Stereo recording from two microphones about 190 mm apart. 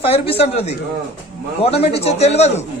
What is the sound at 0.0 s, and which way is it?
Speech, 30° left (ahead or behind).